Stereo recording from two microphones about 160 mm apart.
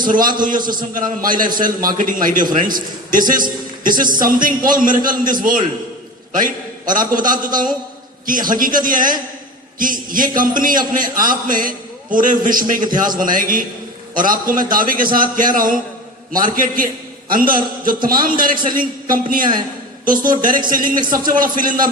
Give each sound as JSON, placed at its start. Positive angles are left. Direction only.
{"t": 0.1, "sound": "a man's voice", "side_deg": -60}
{"t": 20.7, "sound": "a man's voice", "side_deg": -60}